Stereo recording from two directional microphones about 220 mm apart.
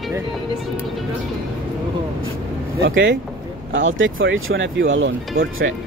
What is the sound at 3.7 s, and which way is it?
Speech, 60° right (ahead or behind).